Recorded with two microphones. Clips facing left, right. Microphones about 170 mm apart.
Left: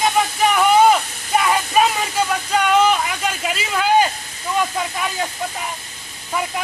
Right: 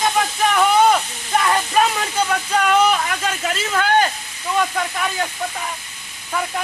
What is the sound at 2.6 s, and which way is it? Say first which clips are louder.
Speech: left 1 dB; centre (ahead or behind).